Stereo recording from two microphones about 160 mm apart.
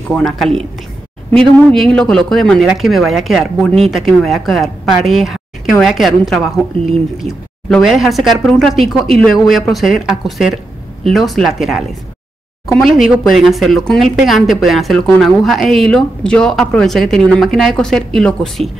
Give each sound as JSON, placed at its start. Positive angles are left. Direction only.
{"t": 0.1, "sound": "speech", "side_deg": 0}
{"t": 1.3, "sound": "a woman's voice", "side_deg": -30}
{"t": 1.8, "sound": "speech", "side_deg": 5}
{"t": 12.8, "sound": "speech", "side_deg": 0}